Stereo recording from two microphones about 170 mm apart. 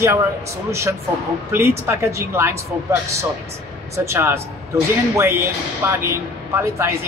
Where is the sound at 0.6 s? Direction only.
15° right (ahead or behind).